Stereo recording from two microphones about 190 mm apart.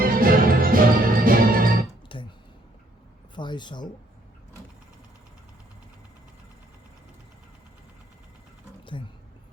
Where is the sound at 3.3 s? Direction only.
25° left (ahead or behind).